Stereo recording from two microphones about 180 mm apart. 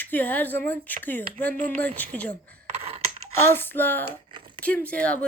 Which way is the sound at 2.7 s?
35° right (ahead or behind).